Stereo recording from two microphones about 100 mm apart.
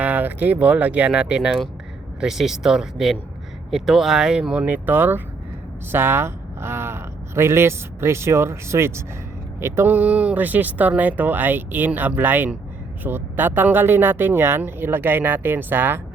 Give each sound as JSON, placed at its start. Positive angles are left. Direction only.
{"t": 0.0, "sound": "speech", "side_deg": -15}